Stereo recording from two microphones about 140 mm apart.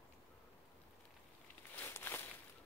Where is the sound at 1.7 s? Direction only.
15° left (ahead or behind).